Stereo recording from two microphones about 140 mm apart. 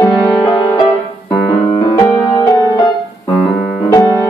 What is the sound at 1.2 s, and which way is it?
Piano, 40° left (ahead or behind).